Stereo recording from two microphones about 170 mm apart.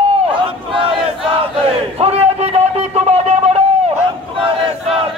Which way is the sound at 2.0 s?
35° right (ahead or behind).